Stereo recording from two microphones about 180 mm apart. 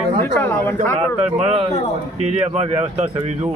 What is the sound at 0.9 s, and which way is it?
Speech, 35° right (ahead or behind).